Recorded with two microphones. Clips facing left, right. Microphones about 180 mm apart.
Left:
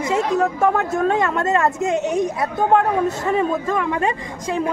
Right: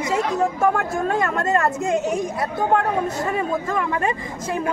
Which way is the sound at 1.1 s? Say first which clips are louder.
Left 2 dB; 20° left (ahead or behind).